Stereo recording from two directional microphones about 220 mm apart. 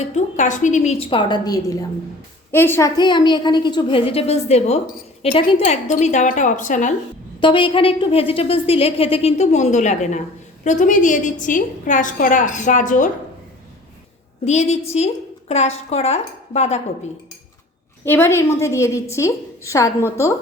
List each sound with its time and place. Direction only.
0.0 s a woman's voice: 35° left (ahead or behind)
7.4 s a woman's voice: 20° left (ahead or behind)
14.4 s a woman's voice: 30° left (ahead or behind)
18.0 s a woman's voice: 10° left (ahead or behind)